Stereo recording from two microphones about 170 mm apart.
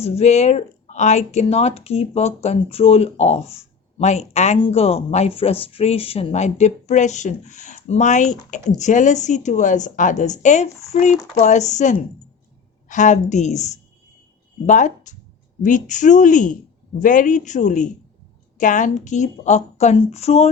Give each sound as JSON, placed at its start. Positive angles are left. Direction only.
{"t": 0.0, "sound": "a woman's voice", "side_deg": 40}